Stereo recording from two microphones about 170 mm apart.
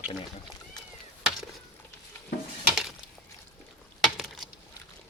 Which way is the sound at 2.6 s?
Centre (ahead or behind).